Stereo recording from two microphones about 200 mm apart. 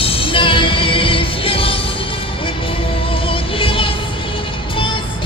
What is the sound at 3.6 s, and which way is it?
Music, 25° left (ahead or behind).